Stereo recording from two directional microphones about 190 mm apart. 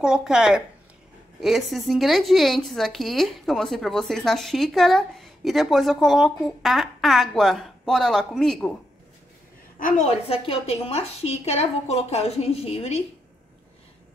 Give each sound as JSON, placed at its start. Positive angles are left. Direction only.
{"t": 0.0, "sound": "a woman's voice", "side_deg": -5}
{"t": 9.8, "sound": "a woman's voice", "side_deg": 40}